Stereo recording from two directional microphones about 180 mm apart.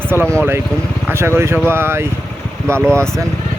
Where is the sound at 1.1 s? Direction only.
15° right (ahead or behind).